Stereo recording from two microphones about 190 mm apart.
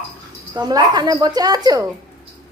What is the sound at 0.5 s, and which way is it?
A woman's voice, 20° right (ahead or behind).